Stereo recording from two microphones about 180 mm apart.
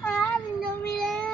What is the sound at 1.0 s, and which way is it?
Child singing, 5° left (ahead or behind).